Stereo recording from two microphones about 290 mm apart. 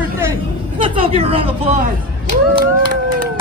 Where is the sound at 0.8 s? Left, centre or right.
Centre.